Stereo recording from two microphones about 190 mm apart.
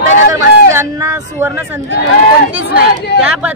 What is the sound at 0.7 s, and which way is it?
Speech, 15° right (ahead or behind).